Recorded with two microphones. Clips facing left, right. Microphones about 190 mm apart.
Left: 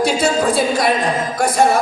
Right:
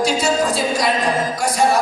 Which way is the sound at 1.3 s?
55° left (ahead or behind).